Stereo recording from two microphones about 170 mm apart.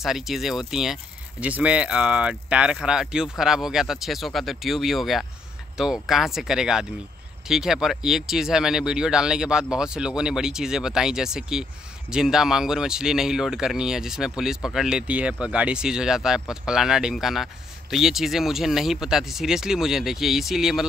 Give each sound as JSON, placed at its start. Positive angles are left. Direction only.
{"t": 0.0, "sound": "speech", "side_deg": 0}